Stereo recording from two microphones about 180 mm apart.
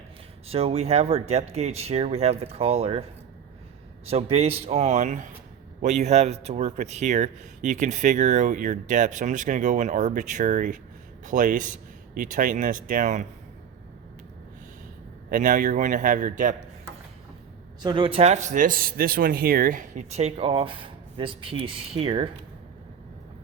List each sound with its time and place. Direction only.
0.4 s speech: 35° right (ahead or behind)
4.0 s speech: 35° right (ahead or behind)
15.3 s speech: 45° right (ahead or behind)
17.8 s speech: 30° right (ahead or behind)